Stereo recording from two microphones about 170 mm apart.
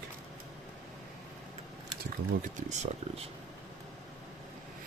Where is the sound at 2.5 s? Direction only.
45° right (ahead or behind).